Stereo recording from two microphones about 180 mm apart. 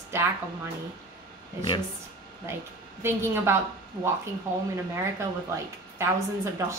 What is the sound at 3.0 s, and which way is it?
Speech, 15° right (ahead or behind).